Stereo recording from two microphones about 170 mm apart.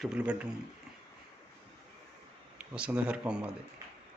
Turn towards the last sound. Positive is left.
turn(degrees=-5)  # may be behind; listen again after turning